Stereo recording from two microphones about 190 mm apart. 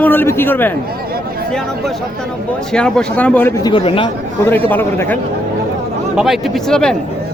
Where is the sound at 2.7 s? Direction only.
5° left (ahead or behind); by 4.1 s 30° left (ahead or behind).